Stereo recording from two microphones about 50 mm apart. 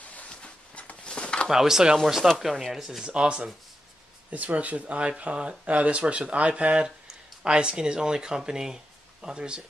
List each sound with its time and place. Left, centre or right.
0.0 s a sound: left
1.5 s speech: centre
3.1 s speech: right